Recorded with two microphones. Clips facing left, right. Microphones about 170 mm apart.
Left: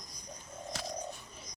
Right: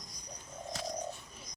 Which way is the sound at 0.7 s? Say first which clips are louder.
Right 2 dB; 85° left.